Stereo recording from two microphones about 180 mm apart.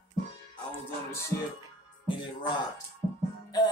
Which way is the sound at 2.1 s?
25° left (ahead or behind).